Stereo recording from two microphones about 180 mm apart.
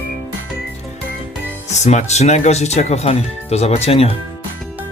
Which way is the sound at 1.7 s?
40° left (ahead or behind).